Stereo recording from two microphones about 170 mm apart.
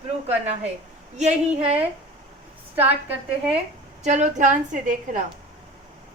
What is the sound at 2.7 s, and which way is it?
Speech, 10° right (ahead or behind).